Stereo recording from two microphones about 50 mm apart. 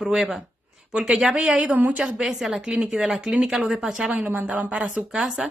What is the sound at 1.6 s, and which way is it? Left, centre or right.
Speech, right.